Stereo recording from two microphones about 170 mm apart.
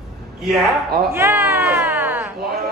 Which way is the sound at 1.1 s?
15° right (ahead or behind).